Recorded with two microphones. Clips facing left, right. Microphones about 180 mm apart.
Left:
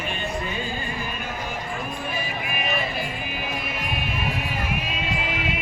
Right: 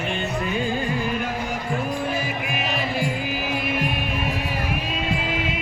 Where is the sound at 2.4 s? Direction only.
90° right.